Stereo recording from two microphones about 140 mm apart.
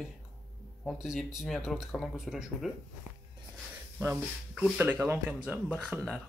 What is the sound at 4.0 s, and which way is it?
Speech, 15° right (ahead or behind).